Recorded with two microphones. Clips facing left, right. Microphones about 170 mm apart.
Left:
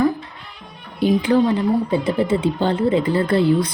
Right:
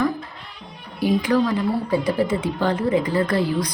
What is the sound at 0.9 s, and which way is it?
Speech, 25° left (ahead or behind).